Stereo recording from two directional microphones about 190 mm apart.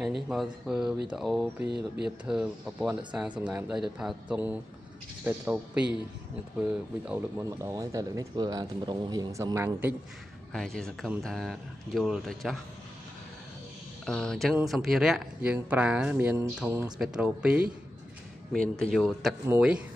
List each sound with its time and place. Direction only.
0.0 s speech: centre (ahead or behind)
7.1 s speech: 15° right (ahead or behind)
10.5 s speech: 5° left (ahead or behind)
14.0 s speech: 5° left (ahead or behind)
19.4 s speech: 10° right (ahead or behind)